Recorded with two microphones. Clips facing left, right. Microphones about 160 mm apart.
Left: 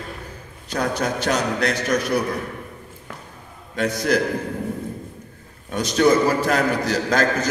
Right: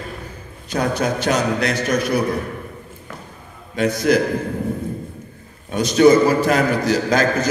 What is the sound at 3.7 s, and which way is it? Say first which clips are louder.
Speech: right 4 dB; 10° right (ahead or behind).